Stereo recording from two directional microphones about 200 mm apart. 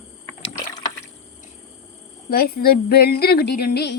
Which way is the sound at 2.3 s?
50° left (ahead or behind).